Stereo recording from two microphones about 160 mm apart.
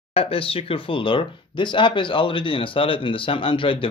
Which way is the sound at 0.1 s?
35° left (ahead or behind).